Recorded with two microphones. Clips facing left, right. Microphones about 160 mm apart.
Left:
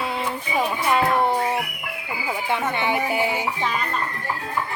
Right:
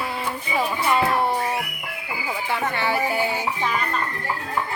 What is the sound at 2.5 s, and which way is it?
Music, 20° left (ahead or behind).